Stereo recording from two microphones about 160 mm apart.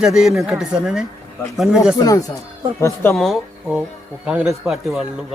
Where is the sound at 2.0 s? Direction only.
20° left (ahead or behind).